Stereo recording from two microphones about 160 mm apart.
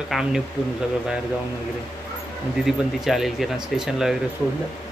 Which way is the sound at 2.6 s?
Centre (ahead or behind).